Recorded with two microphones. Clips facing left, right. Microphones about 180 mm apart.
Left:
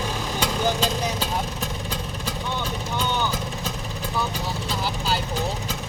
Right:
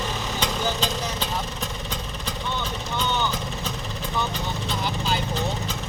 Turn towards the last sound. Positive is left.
turn(degrees=10)  # may be behind; listen again after turning